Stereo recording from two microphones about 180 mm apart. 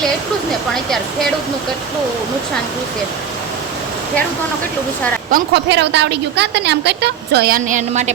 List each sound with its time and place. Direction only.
0.7 s speech: centre (ahead or behind)
5.3 s a woman's voice: 70° right (ahead or behind); by 8.1 s 40° right (ahead or behind)